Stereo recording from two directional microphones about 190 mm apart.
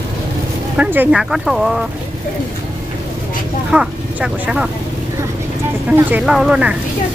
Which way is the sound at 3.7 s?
5° right (ahead or behind).